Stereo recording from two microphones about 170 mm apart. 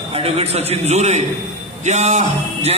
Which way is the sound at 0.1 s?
35° right (ahead or behind).